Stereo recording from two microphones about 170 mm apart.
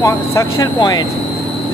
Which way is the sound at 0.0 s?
20° left (ahead or behind).